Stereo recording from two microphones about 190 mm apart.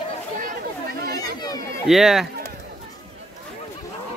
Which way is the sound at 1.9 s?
Centre (ahead or behind).